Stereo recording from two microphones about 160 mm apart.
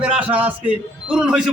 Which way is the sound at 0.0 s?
10° right (ahead or behind).